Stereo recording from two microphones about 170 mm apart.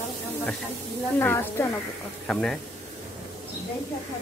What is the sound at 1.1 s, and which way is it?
A woman's voice, 15° left (ahead or behind).